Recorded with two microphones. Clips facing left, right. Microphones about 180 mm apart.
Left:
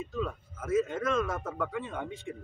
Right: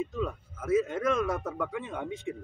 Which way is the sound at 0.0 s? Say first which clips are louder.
Right 2 dB; 15° right (ahead or behind).